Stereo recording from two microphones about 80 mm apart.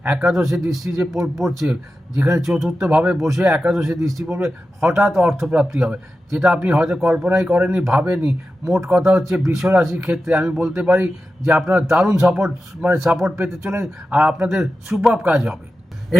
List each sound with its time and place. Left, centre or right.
0.1 s speech: centre
2.9 s speech: centre
3.2 s speech: centre
13.6 s speech: right
14.1 s speech: centre
15.0 s speech: centre